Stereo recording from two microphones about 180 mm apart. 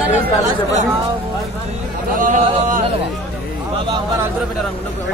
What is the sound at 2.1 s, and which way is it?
Speech, 45° right (ahead or behind).